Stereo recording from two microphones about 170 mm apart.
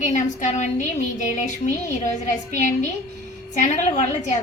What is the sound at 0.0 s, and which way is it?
A woman's voice, 45° left (ahead or behind).